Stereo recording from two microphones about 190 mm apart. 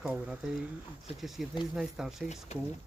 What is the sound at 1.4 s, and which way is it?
Speech, centre (ahead or behind).